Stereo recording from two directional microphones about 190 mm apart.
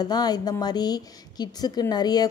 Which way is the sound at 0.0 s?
20° left (ahead or behind).